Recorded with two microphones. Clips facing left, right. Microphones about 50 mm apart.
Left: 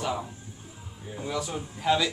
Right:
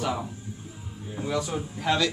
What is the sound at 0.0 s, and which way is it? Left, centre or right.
Speech, centre.